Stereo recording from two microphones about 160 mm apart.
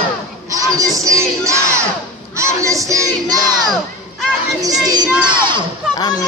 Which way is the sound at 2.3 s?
20° right (ahead or behind).